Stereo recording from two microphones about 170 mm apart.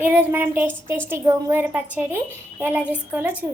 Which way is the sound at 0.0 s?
10° right (ahead or behind).